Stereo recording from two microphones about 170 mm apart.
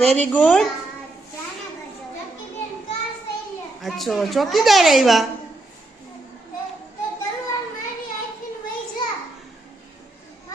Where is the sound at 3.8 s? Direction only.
Centre (ahead or behind).